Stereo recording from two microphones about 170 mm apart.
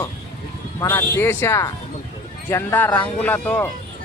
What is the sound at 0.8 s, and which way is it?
Speech, 15° left (ahead or behind).